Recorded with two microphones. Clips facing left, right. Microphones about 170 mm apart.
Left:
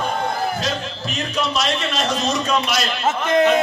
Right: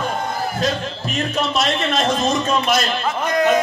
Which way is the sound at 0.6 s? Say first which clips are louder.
Right 3 dB; 50° right (ahead or behind).